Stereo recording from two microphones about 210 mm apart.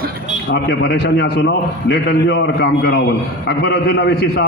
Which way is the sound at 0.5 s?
50° left (ahead or behind).